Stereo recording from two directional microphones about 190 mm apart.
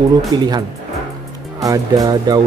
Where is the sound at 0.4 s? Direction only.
20° right (ahead or behind).